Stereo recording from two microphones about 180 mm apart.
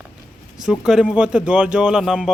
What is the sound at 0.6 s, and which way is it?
Speech, 5° right (ahead or behind).